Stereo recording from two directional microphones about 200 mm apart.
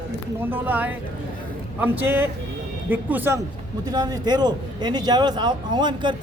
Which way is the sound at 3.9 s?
20° right (ahead or behind).